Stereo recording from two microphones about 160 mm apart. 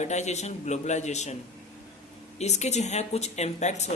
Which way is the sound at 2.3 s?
45° left (ahead or behind).